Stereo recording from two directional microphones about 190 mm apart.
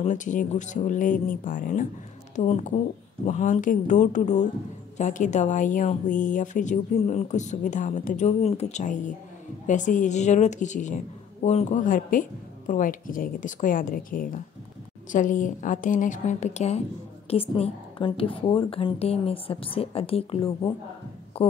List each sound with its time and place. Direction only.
0.0 s a woman's voice: 40° left (ahead or behind)